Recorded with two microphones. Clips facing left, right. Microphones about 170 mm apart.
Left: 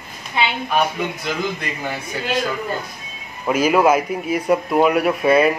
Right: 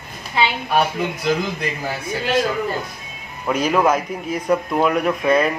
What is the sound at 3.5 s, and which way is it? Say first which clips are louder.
A man's voice: left 2 dB; 5° left (ahead or behind).